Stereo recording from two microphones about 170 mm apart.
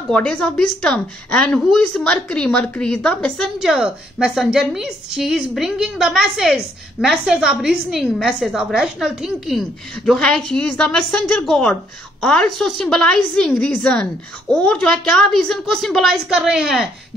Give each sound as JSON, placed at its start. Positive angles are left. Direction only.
{"t": 0.1, "sound": "a woman's voice", "side_deg": 5}